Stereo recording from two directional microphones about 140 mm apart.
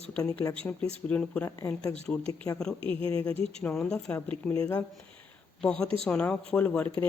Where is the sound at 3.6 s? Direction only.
10° left (ahead or behind).